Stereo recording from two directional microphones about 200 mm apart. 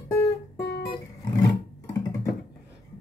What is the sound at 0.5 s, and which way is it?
Music, 55° left (ahead or behind).